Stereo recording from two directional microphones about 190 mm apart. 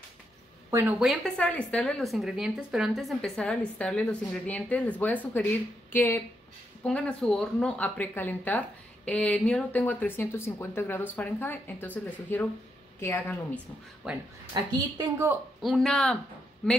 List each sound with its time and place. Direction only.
0.7 s a woman's voice: 15° right (ahead or behind)
0.9 s speech: centre (ahead or behind)
14.0 s speech: 5° right (ahead or behind)
14.5 s a woman's voice: 20° right (ahead or behind)
15.6 s speech: centre (ahead or behind)